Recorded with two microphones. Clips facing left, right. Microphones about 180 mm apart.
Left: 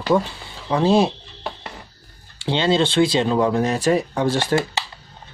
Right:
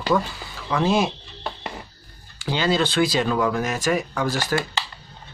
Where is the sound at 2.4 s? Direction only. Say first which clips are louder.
Left 3 dB; 25° left (ahead or behind).